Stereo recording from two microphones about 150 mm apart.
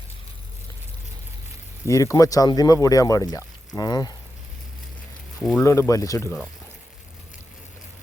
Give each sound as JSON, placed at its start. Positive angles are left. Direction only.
{"t": 1.9, "sound": "speech", "side_deg": 20}
{"t": 5.4, "sound": "speech", "side_deg": 5}
{"t": 5.6, "sound": "speech", "side_deg": 20}